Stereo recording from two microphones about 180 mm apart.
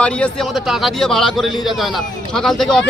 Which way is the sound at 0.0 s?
5° left (ahead or behind).